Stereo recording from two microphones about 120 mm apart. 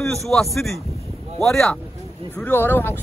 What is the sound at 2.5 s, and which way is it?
Speech, 15° left (ahead or behind).